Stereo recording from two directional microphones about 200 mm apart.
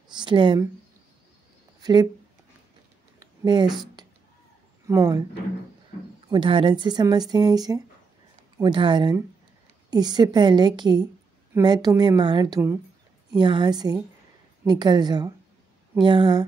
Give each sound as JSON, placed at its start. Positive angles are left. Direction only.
{"t": 0.1, "sound": "speech", "side_deg": -25}
{"t": 1.8, "sound": "speech", "side_deg": -20}
{"t": 3.2, "sound": "a sound", "side_deg": -20}
{"t": 4.8, "sound": "speech", "side_deg": -15}
{"t": 6.2, "sound": "speech", "side_deg": -25}